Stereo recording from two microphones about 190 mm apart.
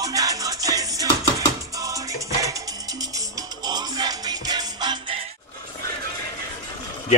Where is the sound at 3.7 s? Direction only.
20° right (ahead or behind).